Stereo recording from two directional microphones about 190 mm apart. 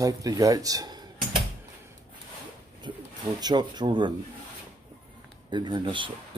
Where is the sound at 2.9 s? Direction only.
25° right (ahead or behind).